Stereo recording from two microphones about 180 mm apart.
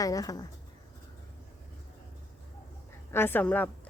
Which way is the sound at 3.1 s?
10° left (ahead or behind).